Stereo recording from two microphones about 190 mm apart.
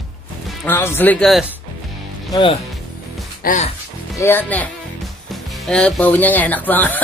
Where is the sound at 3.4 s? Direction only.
40° left (ahead or behind).